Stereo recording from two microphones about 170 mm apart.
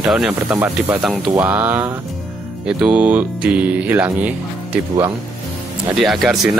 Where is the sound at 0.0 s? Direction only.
5° right (ahead or behind).